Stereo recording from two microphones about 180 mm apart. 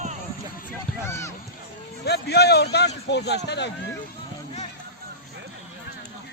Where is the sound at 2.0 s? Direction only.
65° left (ahead or behind).